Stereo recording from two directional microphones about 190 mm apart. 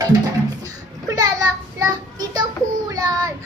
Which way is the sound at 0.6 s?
20° right (ahead or behind).